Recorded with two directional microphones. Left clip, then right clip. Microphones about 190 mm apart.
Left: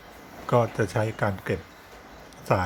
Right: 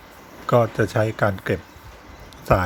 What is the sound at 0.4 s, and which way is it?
Speech, 15° right (ahead or behind).